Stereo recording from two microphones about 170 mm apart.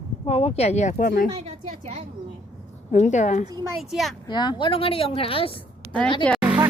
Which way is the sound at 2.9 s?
45° left (ahead or behind).